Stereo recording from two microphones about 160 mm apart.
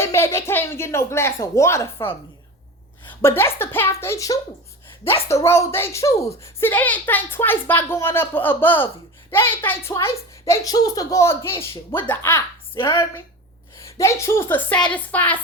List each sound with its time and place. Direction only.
0.0 s a woman's voice: 15° left (ahead or behind)
3.2 s a woman's voice: 15° left (ahead or behind)